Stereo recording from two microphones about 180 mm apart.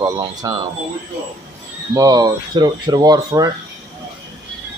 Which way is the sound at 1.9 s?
20° right (ahead or behind).